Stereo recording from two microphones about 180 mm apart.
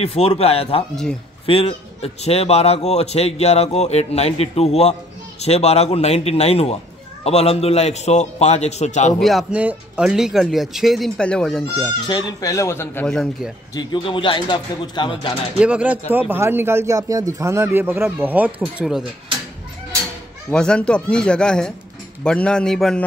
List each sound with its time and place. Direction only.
0.0 s a man's voice: 35° left (ahead or behind)
9.2 s speech: centre (ahead or behind)
12.1 s speech: 20° left (ahead or behind); by 13.5 s 5° left (ahead or behind)
13.7 s a man's voice: 25° left (ahead or behind)
15.6 s speech: 5° right (ahead or behind)
20.4 s speech: 5° left (ahead or behind)